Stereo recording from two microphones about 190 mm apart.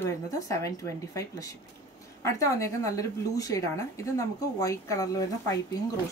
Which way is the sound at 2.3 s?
15° left (ahead or behind).